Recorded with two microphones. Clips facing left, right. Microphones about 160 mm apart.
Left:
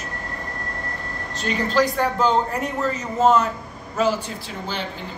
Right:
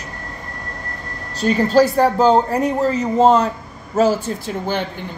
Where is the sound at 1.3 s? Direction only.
40° right (ahead or behind).